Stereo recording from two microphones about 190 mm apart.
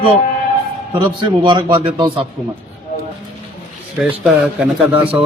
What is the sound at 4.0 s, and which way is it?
A man's voice, 5° right (ahead or behind).